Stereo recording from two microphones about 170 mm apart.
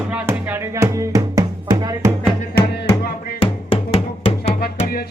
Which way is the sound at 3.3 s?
35° left (ahead or behind).